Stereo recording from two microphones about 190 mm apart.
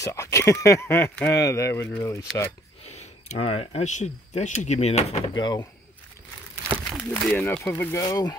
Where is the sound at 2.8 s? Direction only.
35° left (ahead or behind).